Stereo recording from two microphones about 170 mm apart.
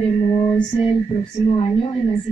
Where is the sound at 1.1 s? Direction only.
35° left (ahead or behind).